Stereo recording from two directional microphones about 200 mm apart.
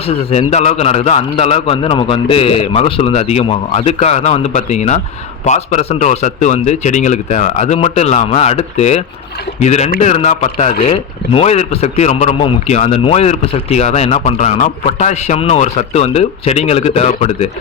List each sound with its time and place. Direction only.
0.1 s a man's voice: 30° left (ahead or behind)